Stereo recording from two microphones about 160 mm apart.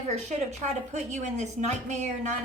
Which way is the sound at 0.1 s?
45° right (ahead or behind).